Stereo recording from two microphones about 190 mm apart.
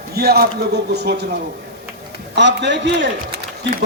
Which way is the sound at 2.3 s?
65° right (ahead or behind).